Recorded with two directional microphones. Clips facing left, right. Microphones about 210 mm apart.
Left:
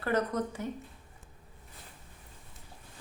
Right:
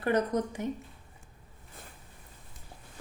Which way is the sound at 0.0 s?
15° right (ahead or behind).